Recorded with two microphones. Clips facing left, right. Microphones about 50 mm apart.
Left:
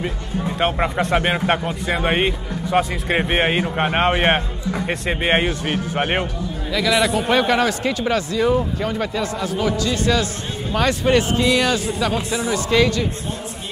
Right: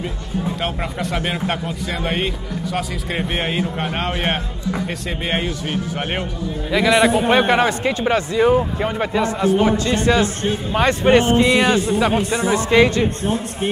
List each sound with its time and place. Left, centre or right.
0.6 s speech: left
6.7 s a man's voice: right
12.4 s a man's voice: right